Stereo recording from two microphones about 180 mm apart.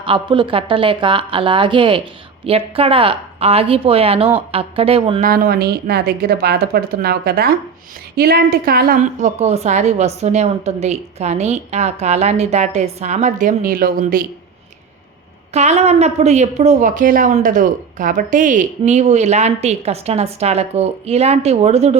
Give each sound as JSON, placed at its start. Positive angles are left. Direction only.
{"t": 0.0, "sound": "a woman's voice", "side_deg": -30}
{"t": 5.2, "sound": "a woman's voice", "side_deg": -55}
{"t": 15.5, "sound": "a woman's voice", "side_deg": -40}